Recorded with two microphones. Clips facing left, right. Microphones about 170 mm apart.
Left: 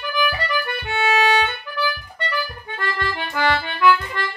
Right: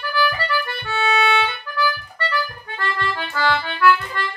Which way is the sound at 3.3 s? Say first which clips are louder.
Left 1 dB; 15° left (ahead or behind).